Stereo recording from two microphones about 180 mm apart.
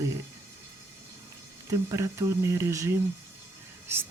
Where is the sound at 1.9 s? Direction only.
15° right (ahead or behind).